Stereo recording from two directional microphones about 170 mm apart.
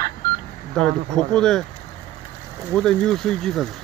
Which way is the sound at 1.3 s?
5° left (ahead or behind).